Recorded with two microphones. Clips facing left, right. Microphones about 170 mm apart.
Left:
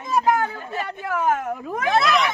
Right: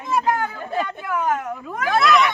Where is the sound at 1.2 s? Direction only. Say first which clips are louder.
Left 4 dB; 25° left (ahead or behind).